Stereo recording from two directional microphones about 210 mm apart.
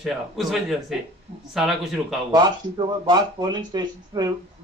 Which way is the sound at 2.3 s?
20° right (ahead or behind).